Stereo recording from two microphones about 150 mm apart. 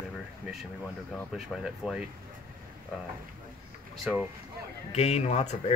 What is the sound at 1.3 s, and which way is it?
Speech, 5° right (ahead or behind).